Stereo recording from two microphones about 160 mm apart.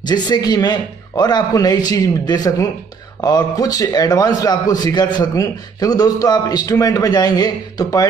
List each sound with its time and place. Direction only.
0.0 s a man's voice: 25° left (ahead or behind)